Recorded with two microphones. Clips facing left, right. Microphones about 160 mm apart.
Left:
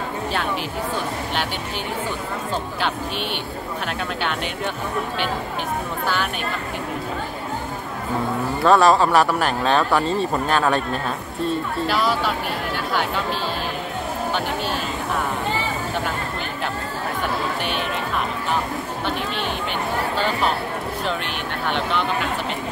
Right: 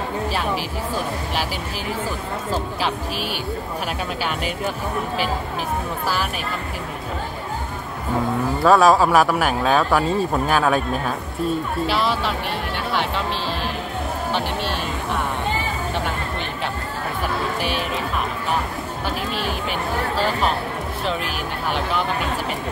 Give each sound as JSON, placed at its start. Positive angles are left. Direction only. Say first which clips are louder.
{"t": 8.6, "sound": "speech", "louder": "right 1 dB", "side_deg": -5}
{"t": 21.6, "sound": "speech", "louder": "even", "side_deg": -5}